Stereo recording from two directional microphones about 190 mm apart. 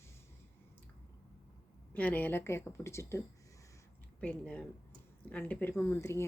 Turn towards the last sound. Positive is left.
turn(degrees=15)  # may be behind; listen again after turning